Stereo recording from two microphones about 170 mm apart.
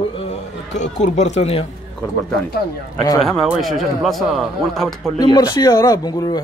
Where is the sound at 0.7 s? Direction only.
45° left (ahead or behind).